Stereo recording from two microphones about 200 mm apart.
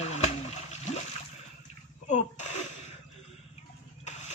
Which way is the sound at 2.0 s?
35° left (ahead or behind).